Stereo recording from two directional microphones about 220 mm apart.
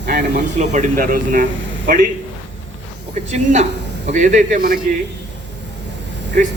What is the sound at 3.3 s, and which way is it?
A man's voice, 30° right (ahead or behind).